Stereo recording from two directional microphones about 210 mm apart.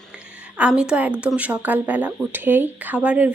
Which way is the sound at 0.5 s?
5° right (ahead or behind).